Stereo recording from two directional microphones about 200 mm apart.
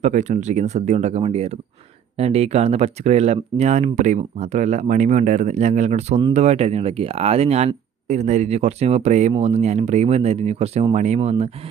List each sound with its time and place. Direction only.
0.0 s speech: 35° right (ahead or behind)